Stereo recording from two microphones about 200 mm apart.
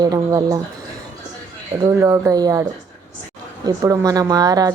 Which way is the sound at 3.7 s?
15° right (ahead or behind).